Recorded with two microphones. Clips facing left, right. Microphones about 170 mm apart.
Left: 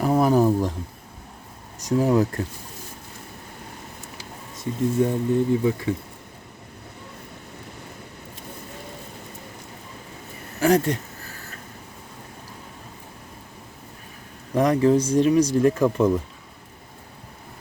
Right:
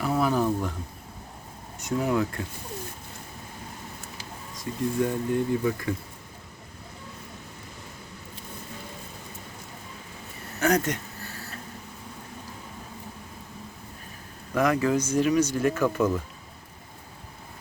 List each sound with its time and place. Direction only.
0.0 s a sound: 40° left (ahead or behind)
1.9 s speech: 35° left (ahead or behind)
5.0 s speech: 20° left (ahead or behind)
10.6 s speech: 30° left (ahead or behind)
11.2 s a sound: 35° right (ahead or behind)
14.5 s speech: 35° left (ahead or behind)